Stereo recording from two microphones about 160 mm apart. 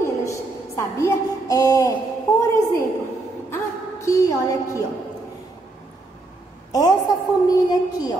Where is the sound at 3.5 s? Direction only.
20° left (ahead or behind).